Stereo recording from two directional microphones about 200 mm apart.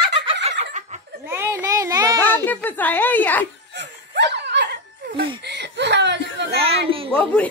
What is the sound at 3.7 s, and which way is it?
Laughter, 60° right (ahead or behind).